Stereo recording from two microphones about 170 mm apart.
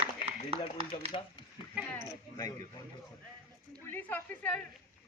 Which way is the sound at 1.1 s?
35° left (ahead or behind).